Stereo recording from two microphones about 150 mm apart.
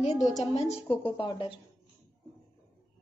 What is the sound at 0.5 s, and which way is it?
A woman's voice, 40° left (ahead or behind).